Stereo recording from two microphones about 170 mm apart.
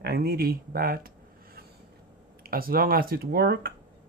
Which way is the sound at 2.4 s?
60° right (ahead or behind).